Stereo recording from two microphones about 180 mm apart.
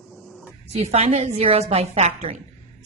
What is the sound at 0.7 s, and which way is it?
A woman's voice, 35° right (ahead or behind).